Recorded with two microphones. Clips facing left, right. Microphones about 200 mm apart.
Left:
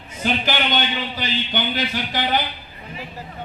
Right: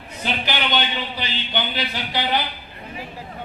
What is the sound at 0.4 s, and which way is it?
A man's voice, 45° left (ahead or behind).